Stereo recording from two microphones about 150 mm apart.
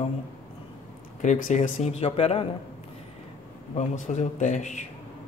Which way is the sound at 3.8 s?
50° left (ahead or behind).